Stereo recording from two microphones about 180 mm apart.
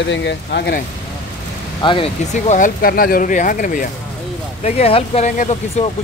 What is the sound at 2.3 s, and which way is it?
Speech, 45° left (ahead or behind).